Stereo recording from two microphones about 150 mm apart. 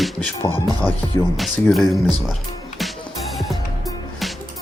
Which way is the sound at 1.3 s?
Centre (ahead or behind).